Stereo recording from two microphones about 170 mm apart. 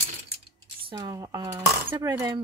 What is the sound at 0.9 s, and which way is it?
Speech, 20° right (ahead or behind).